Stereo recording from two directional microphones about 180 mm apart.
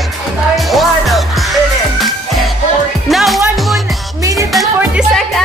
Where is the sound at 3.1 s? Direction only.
Centre (ahead or behind).